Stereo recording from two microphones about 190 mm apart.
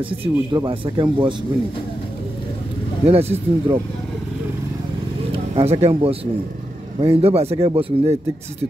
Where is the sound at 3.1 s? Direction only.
30° right (ahead or behind).